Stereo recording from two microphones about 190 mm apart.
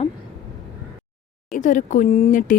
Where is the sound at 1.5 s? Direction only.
40° left (ahead or behind).